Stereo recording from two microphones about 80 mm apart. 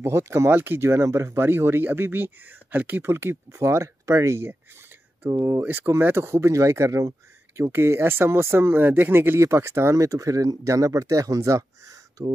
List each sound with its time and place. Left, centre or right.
0.0 s speech: right
5.6 s speech: right
7.7 s speech: right